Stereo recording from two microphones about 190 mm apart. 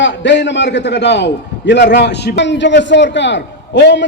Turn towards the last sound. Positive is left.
turn(degrees=65)  # may be behind; listen again after turning